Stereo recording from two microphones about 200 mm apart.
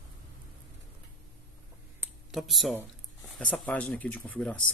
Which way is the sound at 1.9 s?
5° right (ahead or behind).